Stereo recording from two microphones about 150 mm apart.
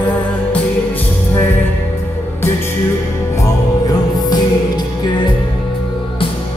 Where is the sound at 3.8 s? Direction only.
25° left (ahead or behind).